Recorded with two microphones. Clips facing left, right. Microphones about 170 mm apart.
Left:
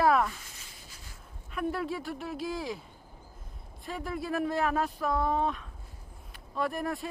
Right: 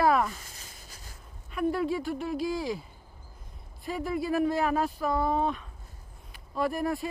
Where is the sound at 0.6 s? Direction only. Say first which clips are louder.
Right 2 dB; 40° right (ahead or behind).